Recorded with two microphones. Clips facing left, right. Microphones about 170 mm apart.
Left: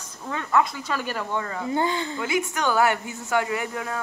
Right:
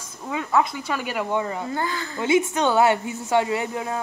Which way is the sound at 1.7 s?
20° left (ahead or behind).